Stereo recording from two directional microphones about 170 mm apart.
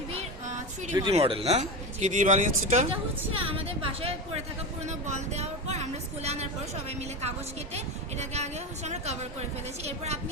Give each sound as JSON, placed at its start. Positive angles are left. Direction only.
{"t": 1.1, "sound": "a woman's voice", "side_deg": -35}
{"t": 3.3, "sound": "a woman's voice", "side_deg": -35}
{"t": 4.9, "sound": "a woman's voice", "side_deg": -45}
{"t": 8.2, "sound": "a woman's voice", "side_deg": -40}